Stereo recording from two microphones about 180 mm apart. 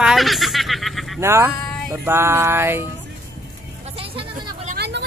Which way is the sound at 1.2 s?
15° right (ahead or behind).